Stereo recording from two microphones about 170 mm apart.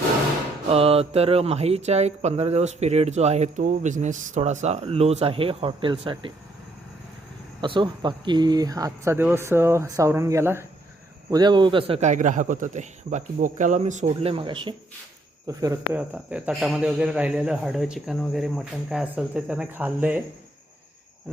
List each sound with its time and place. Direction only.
0.7 s speech: 35° right (ahead or behind)
7.6 s speech: 30° right (ahead or behind)
11.3 s a man's voice: 25° right (ahead or behind)
15.9 s a man's voice: 5° right (ahead or behind)